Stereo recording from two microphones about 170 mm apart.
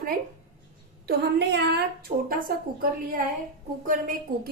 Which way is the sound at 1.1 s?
80° right.